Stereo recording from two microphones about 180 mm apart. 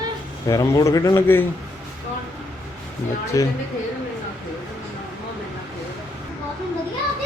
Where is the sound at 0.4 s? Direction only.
20° left (ahead or behind).